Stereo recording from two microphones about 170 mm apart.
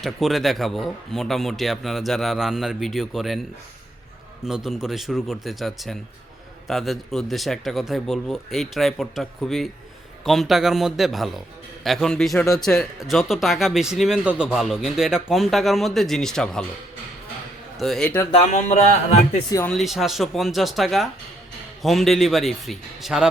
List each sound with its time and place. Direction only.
0.0 s speech: centre (ahead or behind)
4.4 s speech: centre (ahead or behind)
17.7 s speech: centre (ahead or behind)
18.3 s speech: 40° left (ahead or behind)
19.5 s speech: 15° left (ahead or behind)
19.7 s speech: centre (ahead or behind)